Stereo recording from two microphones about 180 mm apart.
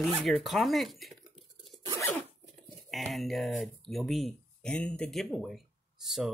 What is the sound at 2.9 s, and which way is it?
Speech, centre (ahead or behind).